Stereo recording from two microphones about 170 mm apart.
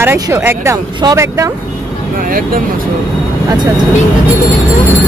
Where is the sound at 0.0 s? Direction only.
15° right (ahead or behind).